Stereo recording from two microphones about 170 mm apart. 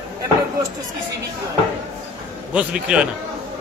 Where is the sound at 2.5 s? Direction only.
5° right (ahead or behind).